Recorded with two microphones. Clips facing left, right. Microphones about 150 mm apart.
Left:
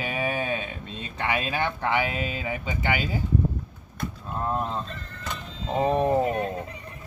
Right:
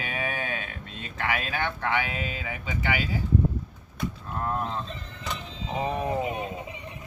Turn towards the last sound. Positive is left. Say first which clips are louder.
# left 5 dB
turn(degrees=-5)  # may be behind; listen again after turning